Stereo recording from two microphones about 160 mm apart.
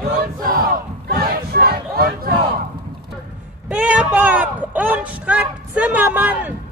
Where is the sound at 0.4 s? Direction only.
65° right (ahead or behind).